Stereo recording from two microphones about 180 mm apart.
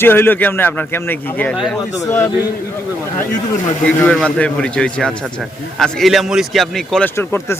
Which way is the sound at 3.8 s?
5° left (ahead or behind).